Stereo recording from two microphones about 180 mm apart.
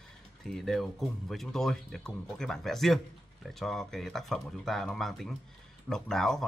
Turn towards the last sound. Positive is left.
turn(degrees=0)  # may be behind; listen again after turning